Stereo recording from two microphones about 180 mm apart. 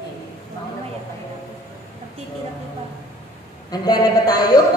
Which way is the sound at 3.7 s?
20° left (ahead or behind).